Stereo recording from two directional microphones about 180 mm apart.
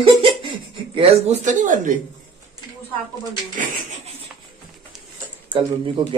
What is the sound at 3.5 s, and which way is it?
Speech, 45° right (ahead or behind).